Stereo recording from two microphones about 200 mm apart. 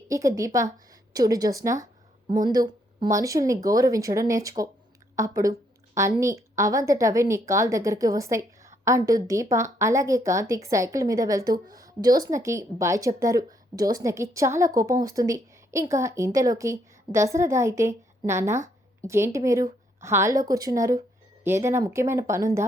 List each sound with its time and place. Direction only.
0.1 s a woman's voice: 15° right (ahead or behind)